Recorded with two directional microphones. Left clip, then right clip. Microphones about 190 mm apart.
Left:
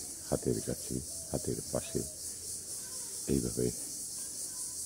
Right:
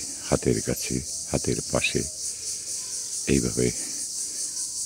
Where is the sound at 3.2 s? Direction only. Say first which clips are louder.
Right 9 dB; 25° right (ahead or behind).